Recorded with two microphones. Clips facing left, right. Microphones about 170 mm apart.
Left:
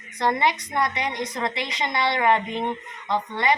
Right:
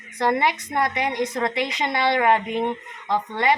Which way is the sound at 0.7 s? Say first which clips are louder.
Right 2 dB; 55° right (ahead or behind).